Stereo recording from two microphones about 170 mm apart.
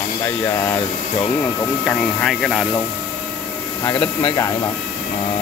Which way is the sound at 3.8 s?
25° left (ahead or behind).